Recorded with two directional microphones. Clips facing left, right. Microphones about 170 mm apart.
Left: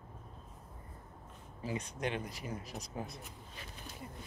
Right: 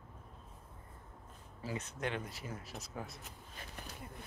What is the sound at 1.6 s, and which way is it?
Speech, 15° left (ahead or behind).